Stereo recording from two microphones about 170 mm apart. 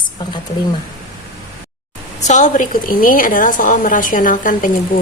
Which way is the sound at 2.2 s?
45° left (ahead or behind).